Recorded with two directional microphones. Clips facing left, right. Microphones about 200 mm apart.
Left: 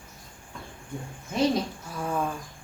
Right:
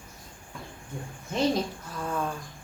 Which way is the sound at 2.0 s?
10° left (ahead or behind).